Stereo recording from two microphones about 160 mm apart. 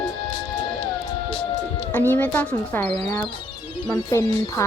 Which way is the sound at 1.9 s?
10° left (ahead or behind).